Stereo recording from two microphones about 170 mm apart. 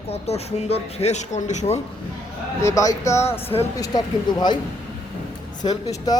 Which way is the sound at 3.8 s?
25° left (ahead or behind).